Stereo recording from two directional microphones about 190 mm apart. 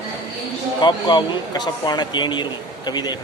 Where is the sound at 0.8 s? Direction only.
25° left (ahead or behind).